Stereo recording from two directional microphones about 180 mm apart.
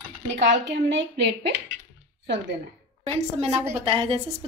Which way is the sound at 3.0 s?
35° right (ahead or behind).